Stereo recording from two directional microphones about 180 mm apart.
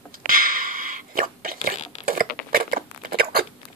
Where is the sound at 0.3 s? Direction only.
50° right (ahead or behind).